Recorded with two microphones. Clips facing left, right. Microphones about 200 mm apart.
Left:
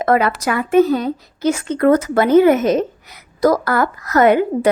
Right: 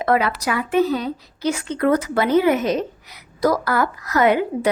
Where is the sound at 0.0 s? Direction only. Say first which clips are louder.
Left 3 dB; 50° left (ahead or behind).